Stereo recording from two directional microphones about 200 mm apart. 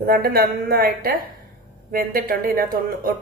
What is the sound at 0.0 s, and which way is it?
Speech, 50° right (ahead or behind).